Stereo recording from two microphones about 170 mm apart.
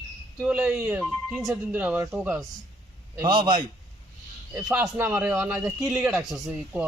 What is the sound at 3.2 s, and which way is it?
Speech, 25° right (ahead or behind).